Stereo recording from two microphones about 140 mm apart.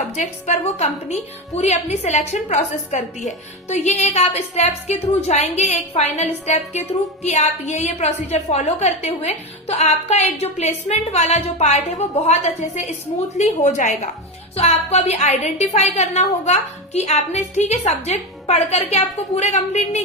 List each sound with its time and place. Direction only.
0.2 s a woman's voice: 55° left (ahead or behind)